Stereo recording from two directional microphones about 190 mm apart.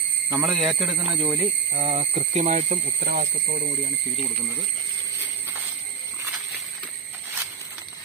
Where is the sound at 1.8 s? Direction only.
30° right (ahead or behind).